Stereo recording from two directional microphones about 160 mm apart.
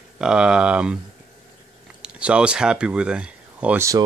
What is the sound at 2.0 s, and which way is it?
Speech, 5° right (ahead or behind).